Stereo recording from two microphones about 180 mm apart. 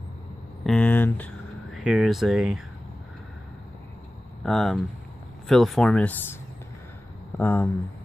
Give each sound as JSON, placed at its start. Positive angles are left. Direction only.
{"t": 0.7, "sound": "speech", "side_deg": 5}
{"t": 4.4, "sound": "speech", "side_deg": 0}
{"t": 7.3, "sound": "speech", "side_deg": 10}